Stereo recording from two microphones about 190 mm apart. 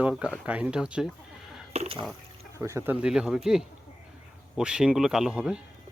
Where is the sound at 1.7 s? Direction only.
30° right (ahead or behind).